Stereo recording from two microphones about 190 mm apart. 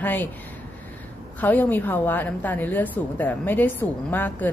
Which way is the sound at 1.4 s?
10° left (ahead or behind).